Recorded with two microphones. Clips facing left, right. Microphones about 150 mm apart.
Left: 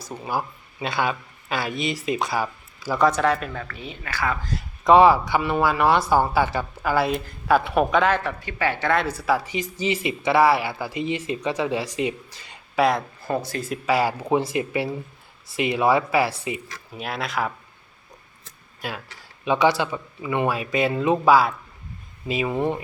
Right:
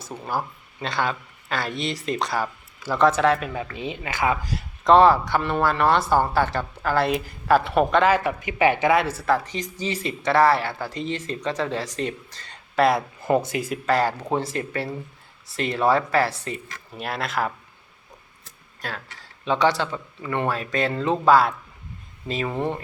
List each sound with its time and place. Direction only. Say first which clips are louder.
0.1 s speech: left 1 dB; 5° left (ahead or behind)
3.5 s speech: right 4 dB; 15° right (ahead or behind)
4.5 s speech: left 1 dB; 5° left (ahead or behind)
8.1 s speech: right 3 dB; 10° right (ahead or behind)
9.0 s speech: right 2 dB; 5° right (ahead or behind)
9.2 s speech: even; 5° left (ahead or behind)
13.3 s speech: right 5 dB; 15° right (ahead or behind)
13.7 s speech: left 4 dB; 5° left (ahead or behind)
18.8 s speech: left 1 dB; 10° left (ahead or behind)